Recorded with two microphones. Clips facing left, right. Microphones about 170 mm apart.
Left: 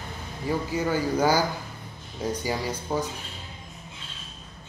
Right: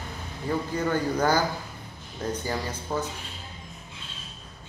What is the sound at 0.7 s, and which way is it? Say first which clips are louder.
Speech: left 1 dB; 10° left (ahead or behind).